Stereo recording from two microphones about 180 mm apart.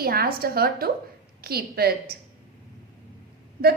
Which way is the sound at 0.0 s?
55° right (ahead or behind).